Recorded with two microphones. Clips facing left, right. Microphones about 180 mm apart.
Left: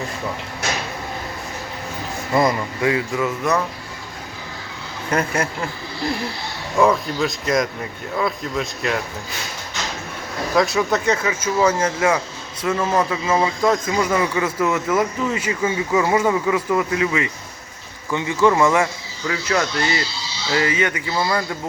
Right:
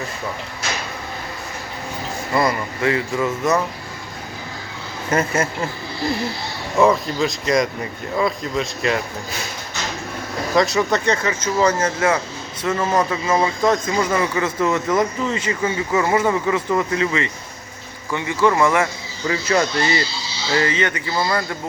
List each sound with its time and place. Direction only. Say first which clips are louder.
2.3 s speech: left 2 dB; 20° left (ahead or behind)
3.2 s speech: right 1 dB; centre (ahead or behind)
5.1 s speech: right 2 dB; 5° right (ahead or behind)
6.7 s speech: right 1 dB; centre (ahead or behind)
10.5 s speech: right 1 dB; centre (ahead or behind)
12.8 s speech: right 1 dB; 10° right (ahead or behind)
13.1 s speech: even; 5° left (ahead or behind)
19.3 s speech: right 2 dB; centre (ahead or behind)
20.5 s speech: even; 10° left (ahead or behind)